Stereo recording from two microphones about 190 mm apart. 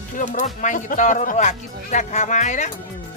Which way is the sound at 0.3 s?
40° left (ahead or behind).